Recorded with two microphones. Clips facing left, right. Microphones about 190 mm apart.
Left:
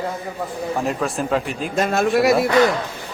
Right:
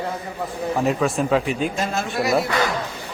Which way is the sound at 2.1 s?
Centre (ahead or behind).